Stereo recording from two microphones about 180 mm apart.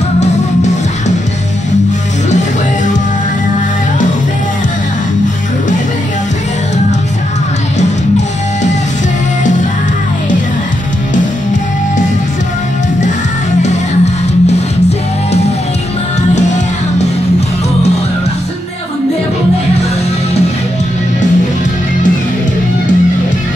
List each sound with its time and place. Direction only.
13.6 s music: 40° left (ahead or behind)